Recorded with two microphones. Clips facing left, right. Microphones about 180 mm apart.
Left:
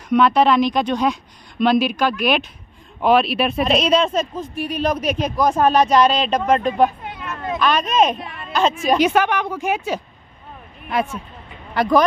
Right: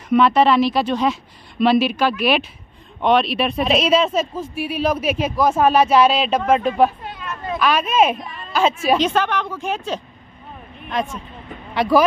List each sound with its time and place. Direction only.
0.1 s speech: 5° right (ahead or behind)
8.2 s speech: 65° left (ahead or behind)
8.5 s speech: 5° right (ahead or behind)
8.9 s a woman's voice: 10° left (ahead or behind)